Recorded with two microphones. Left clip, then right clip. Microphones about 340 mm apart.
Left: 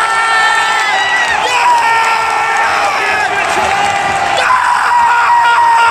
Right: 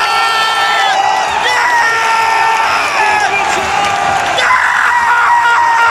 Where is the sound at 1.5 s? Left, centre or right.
Centre.